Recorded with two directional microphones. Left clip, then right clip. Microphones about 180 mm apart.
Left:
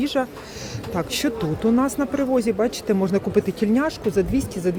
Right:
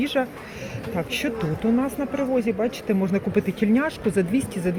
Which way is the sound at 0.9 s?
25° left (ahead or behind).